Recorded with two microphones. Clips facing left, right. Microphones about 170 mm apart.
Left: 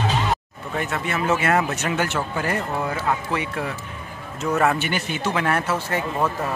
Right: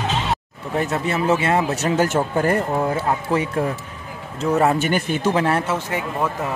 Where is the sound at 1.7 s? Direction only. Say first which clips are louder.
Right 5 dB; 35° right (ahead or behind).